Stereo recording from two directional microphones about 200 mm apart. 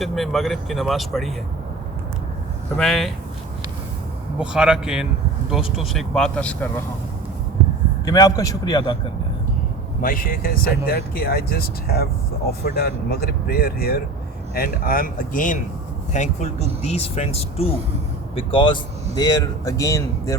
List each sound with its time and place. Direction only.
0.0 s speech: centre (ahead or behind)
2.7 s speech: centre (ahead or behind)
4.4 s speech: 5° right (ahead or behind)
8.0 s a man's voice: 20° left (ahead or behind)
10.0 s a man's voice: 45° left (ahead or behind); by 20.3 s 15° left (ahead or behind)